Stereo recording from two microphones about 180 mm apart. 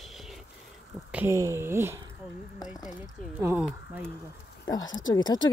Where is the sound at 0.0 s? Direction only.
Centre (ahead or behind).